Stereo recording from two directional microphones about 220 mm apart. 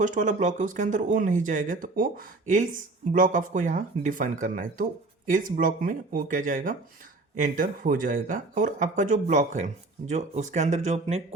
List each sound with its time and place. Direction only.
0.0 s speech: 35° right (ahead or behind)